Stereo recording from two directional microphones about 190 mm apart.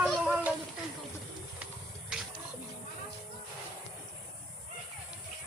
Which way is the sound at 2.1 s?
Centre (ahead or behind).